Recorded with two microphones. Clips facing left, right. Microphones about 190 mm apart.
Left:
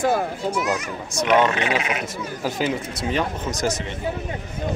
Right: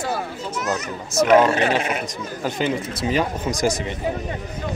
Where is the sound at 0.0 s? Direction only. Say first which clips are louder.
Left 5 dB; 50° left (ahead or behind).